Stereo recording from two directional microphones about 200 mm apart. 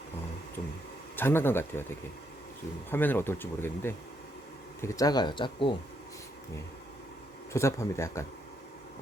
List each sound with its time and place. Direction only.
1.1 s speech: 10° left (ahead or behind)
2.9 s speech: 10° left (ahead or behind)
7.5 s speech: 15° left (ahead or behind)